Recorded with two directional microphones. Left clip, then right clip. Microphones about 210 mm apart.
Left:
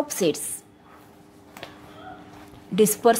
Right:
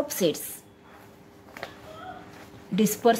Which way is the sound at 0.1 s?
15° left (ahead or behind).